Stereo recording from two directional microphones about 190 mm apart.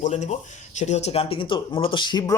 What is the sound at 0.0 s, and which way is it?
Speech, 40° left (ahead or behind).